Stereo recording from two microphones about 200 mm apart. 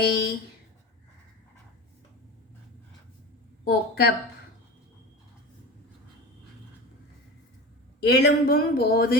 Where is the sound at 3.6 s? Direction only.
50° left (ahead or behind).